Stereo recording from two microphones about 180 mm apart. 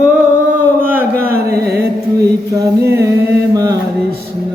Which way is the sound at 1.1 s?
60° right (ahead or behind).